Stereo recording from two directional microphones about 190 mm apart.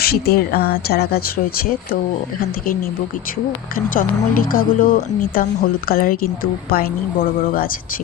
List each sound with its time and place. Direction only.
0.0 s speech: 55° left (ahead or behind)
3.8 s a woman's voice: 45° left (ahead or behind)